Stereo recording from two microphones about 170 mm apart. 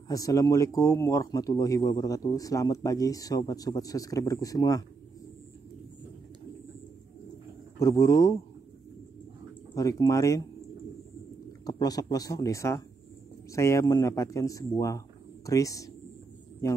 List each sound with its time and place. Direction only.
0.1 s speech: 20° left (ahead or behind)
7.8 s speech: 20° left (ahead or behind)
9.8 s speech: 20° left (ahead or behind)
11.6 s speech: 20° left (ahead or behind)